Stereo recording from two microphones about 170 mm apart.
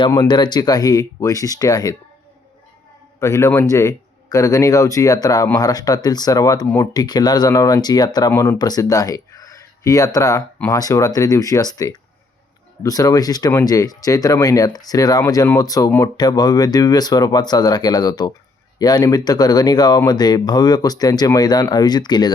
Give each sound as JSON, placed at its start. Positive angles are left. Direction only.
{"t": 0.1, "sound": "speech", "side_deg": 25}
{"t": 3.2, "sound": "speech", "side_deg": 15}